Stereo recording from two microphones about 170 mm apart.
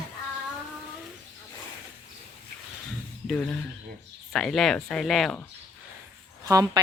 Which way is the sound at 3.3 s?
5° left (ahead or behind).